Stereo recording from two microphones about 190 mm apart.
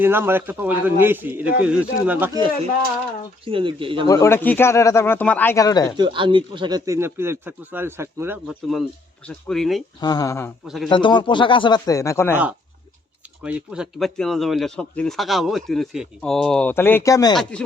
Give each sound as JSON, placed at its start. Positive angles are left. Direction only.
{"t": 0.0, "sound": "speech", "side_deg": -10}
{"t": 3.4, "sound": "speech", "side_deg": -25}
{"t": 4.0, "sound": "speech", "side_deg": 15}
{"t": 6.0, "sound": "speech", "side_deg": -25}
{"t": 8.4, "sound": "speech", "side_deg": 0}
{"t": 10.0, "sound": "speech", "side_deg": 20}
{"t": 13.4, "sound": "speech", "side_deg": -5}
{"t": 17.3, "sound": "speech", "side_deg": 0}